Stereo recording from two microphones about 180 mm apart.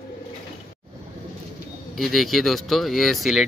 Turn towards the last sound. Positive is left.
turn(degrees=0)  # may be behind; listen again after turning